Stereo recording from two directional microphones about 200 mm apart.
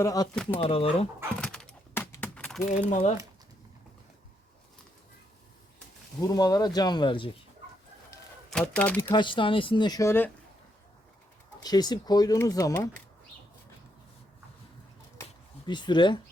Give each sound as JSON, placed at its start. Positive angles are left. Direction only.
{"t": 0.0, "sound": "speech", "side_deg": 15}
{"t": 0.6, "sound": "speech", "side_deg": 30}
{"t": 1.4, "sound": "a sound", "side_deg": 5}
{"t": 2.6, "sound": "speech", "side_deg": 40}
{"t": 6.1, "sound": "speech", "side_deg": 20}
{"t": 8.4, "sound": "speech", "side_deg": 5}
{"t": 9.1, "sound": "speech", "side_deg": 25}
{"t": 11.6, "sound": "speech", "side_deg": 20}
{"t": 15.2, "sound": "a sound", "side_deg": 20}